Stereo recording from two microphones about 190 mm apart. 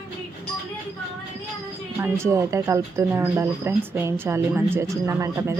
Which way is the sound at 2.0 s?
15° right (ahead or behind).